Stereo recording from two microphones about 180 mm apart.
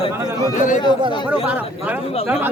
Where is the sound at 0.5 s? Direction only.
45° left (ahead or behind).